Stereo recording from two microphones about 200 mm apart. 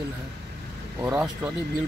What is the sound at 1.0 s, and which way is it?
Speech, 5° right (ahead or behind).